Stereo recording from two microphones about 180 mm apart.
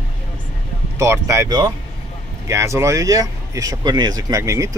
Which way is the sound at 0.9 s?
15° right (ahead or behind).